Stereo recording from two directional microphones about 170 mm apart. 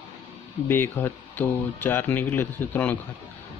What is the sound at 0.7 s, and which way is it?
Speech, 10° left (ahead or behind).